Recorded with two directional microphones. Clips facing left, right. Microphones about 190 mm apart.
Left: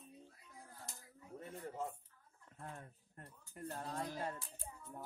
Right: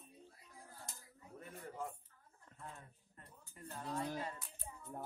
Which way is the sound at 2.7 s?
50° left (ahead or behind).